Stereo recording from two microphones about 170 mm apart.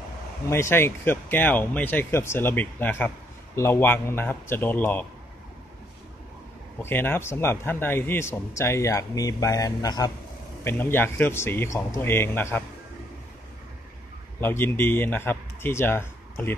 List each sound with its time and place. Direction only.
0.5 s a man's voice: 15° left (ahead or behind)
6.8 s a man's voice: 15° left (ahead or behind)
14.4 s a man's voice: 15° left (ahead or behind)